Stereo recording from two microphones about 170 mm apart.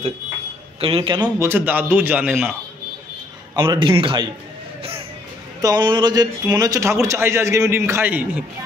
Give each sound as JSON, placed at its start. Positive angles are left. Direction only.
{"t": 0.7, "sound": "speech", "side_deg": -35}
{"t": 1.2, "sound": "a man's voice", "side_deg": -10}
{"t": 3.5, "sound": "a man's voice", "side_deg": -15}
{"t": 3.8, "sound": "a man's voice", "side_deg": -30}
{"t": 5.6, "sound": "a man's voice", "side_deg": -25}